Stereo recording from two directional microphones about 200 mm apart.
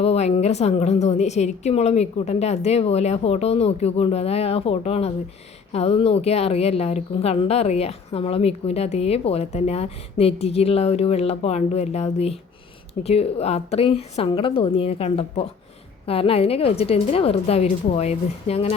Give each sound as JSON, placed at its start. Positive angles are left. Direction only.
{"t": 0.0, "sound": "a woman's voice", "side_deg": 30}